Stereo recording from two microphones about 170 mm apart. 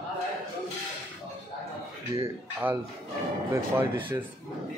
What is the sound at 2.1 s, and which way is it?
Speech, 35° right (ahead or behind).